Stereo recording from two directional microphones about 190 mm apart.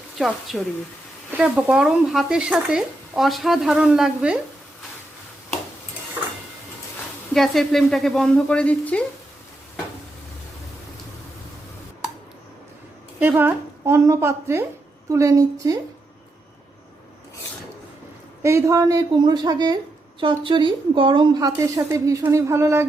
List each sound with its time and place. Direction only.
0.2 s speech: centre (ahead or behind)
7.3 s speech: centre (ahead or behind)
13.1 s a woman's voice: 10° right (ahead or behind)
18.4 s speech: 15° right (ahead or behind)